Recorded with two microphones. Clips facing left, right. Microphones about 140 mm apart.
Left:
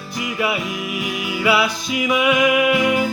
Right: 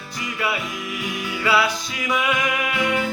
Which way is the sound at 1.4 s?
15° left (ahead or behind).